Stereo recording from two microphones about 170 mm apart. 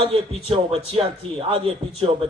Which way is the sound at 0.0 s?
30° right (ahead or behind).